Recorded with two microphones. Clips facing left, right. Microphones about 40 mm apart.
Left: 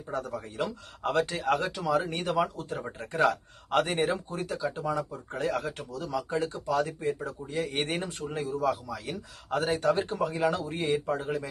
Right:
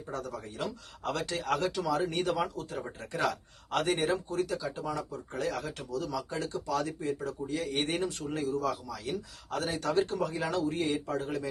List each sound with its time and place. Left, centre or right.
0.1 s a man's voice: left